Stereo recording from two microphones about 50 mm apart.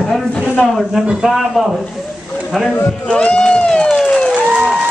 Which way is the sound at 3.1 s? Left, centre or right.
Centre.